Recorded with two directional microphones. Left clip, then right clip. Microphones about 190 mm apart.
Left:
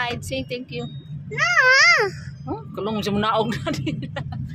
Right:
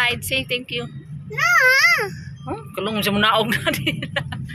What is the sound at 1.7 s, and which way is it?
Speech, 60° left (ahead or behind).